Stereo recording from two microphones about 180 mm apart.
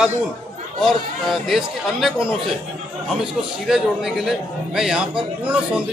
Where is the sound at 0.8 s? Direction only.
Centre (ahead or behind).